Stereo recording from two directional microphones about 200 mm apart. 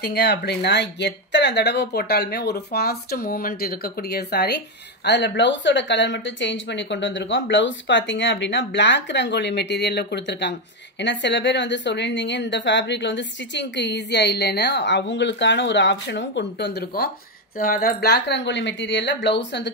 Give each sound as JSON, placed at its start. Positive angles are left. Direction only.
{"t": 0.0, "sound": "a woman's voice", "side_deg": 55}